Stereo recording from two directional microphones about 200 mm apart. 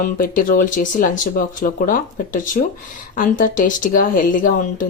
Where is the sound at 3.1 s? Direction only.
40° left (ahead or behind).